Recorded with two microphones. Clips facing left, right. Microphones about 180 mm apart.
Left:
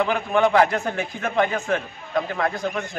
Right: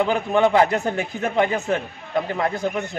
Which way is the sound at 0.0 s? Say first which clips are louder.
Right 2 dB; 25° right (ahead or behind).